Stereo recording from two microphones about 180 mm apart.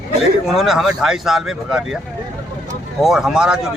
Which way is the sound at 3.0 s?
Centre (ahead or behind).